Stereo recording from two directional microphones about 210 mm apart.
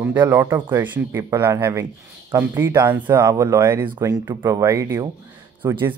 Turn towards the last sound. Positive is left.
turn(degrees=-15)  # may be behind; listen again after turning